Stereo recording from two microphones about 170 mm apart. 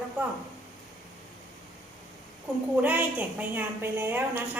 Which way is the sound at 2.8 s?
10° right (ahead or behind).